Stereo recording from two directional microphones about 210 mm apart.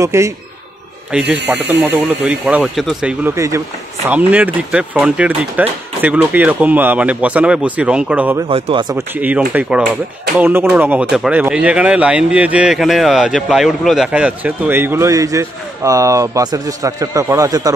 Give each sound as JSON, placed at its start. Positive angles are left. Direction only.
{"t": 0.0, "sound": "speech", "side_deg": -15}
{"t": 4.6, "sound": "speech", "side_deg": -5}
{"t": 8.5, "sound": "speech", "side_deg": -25}
{"t": 9.1, "sound": "speech", "side_deg": -10}